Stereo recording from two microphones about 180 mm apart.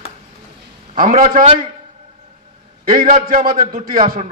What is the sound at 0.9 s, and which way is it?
Speech, 50° right (ahead or behind).